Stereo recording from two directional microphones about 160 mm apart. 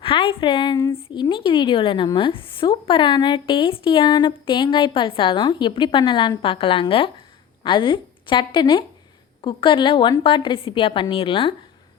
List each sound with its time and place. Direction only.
0.0 s a woman's voice: 35° left (ahead or behind)